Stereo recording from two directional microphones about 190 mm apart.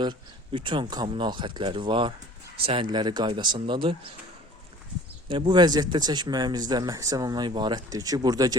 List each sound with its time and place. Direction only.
0.0 s speech: 25° right (ahead or behind)
5.3 s speech: 25° right (ahead or behind)